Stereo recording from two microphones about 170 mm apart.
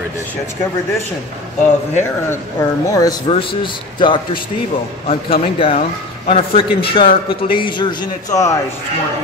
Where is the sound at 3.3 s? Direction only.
30° left (ahead or behind).